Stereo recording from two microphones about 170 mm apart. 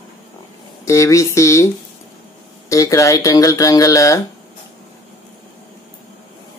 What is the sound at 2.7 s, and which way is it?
Speech, 20° left (ahead or behind).